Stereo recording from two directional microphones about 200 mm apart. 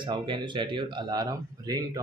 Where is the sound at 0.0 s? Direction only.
25° right (ahead or behind).